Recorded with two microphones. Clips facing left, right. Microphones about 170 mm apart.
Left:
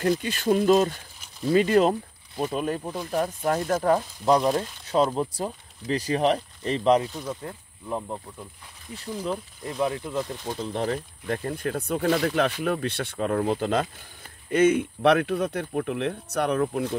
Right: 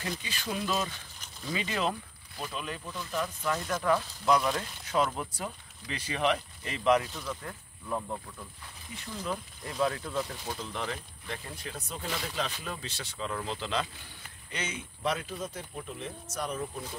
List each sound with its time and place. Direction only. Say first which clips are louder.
0.0 s speech: left 13 dB; 50° left (ahead or behind); by 9.8 s 30° left (ahead or behind)
9.8 s speech: left 3 dB; 15° left (ahead or behind)
10.5 s speech: left 11 dB; 35° left (ahead or behind)
11.2 s speech: left 12 dB; 50° left (ahead or behind)